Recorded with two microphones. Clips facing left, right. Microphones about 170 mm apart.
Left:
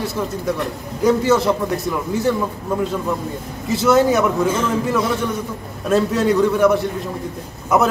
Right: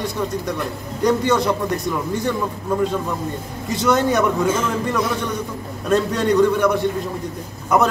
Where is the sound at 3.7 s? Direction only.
5° left (ahead or behind).